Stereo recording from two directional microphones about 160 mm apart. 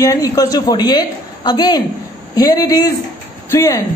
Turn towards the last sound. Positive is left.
turn(degrees=20)  # may be behind; listen again after turning